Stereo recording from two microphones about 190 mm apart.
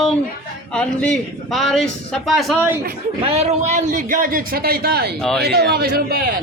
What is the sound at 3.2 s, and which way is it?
A man's voice, 35° right (ahead or behind).